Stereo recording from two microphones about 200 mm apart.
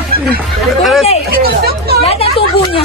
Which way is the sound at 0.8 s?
Centre (ahead or behind).